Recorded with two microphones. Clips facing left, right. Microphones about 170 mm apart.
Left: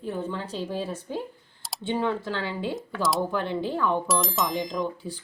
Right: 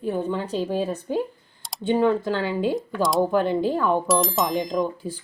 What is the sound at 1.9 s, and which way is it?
Speech, 50° right (ahead or behind).